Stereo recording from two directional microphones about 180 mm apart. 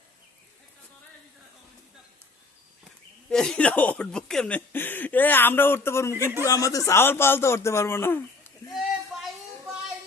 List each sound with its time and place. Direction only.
3.2 s speech: 5° left (ahead or behind)
6.1 s speech: 15° right (ahead or behind)
6.4 s speech: 20° left (ahead or behind)
8.7 s a sound: centre (ahead or behind)